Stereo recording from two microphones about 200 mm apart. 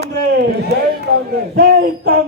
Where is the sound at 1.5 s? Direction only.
50° right (ahead or behind).